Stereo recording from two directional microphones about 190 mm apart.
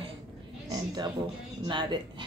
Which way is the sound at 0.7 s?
20° right (ahead or behind).